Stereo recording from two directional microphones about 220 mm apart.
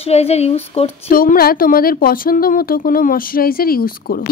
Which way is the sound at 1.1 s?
40° left (ahead or behind).